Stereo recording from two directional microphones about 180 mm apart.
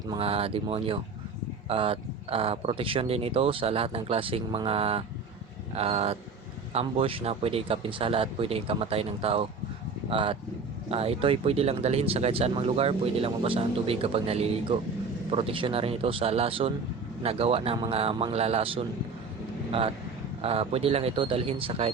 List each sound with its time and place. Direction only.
0.1 s speech: 30° right (ahead or behind)
20.4 s speech: 35° right (ahead or behind)